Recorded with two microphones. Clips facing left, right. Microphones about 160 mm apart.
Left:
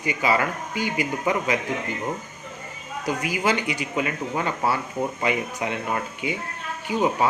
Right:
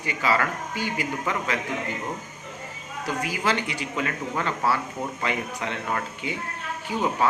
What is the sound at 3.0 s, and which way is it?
Speech, 15° left (ahead or behind).